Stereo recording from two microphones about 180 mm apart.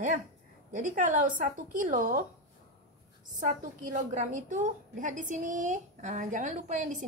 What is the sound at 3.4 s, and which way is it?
A woman's voice, 45° right (ahead or behind).